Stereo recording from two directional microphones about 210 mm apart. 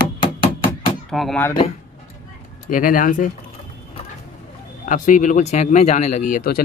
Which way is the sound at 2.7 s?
40° left (ahead or behind).